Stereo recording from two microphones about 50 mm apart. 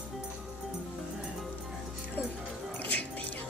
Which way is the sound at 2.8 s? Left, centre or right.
Left.